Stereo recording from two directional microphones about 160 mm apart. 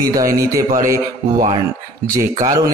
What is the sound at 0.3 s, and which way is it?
Speech, 20° right (ahead or behind).